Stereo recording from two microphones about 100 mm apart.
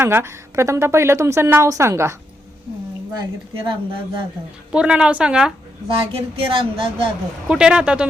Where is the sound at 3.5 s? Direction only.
60° right (ahead or behind).